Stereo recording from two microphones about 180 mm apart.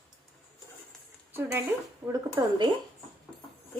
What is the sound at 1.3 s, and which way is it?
Speech, 10° right (ahead or behind).